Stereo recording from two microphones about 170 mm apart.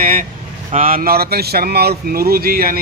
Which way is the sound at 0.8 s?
60° right (ahead or behind).